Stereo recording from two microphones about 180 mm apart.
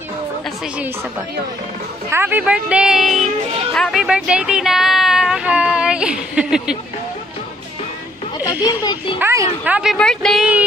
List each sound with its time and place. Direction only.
2.0 s a man's voice: 10° right (ahead or behind)
8.5 s speech: 25° left (ahead or behind)
9.2 s a man's voice: 15° right (ahead or behind)
9.7 s speech: 5° right (ahead or behind)